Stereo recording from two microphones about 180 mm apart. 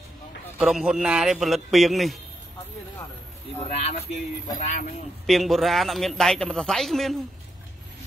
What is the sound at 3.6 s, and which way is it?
Speech, 35° left (ahead or behind).